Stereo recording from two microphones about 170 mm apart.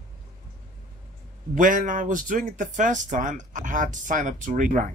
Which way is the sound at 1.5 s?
50° right (ahead or behind).